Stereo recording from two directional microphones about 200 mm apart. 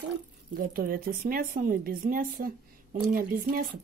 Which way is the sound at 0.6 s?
45° right (ahead or behind).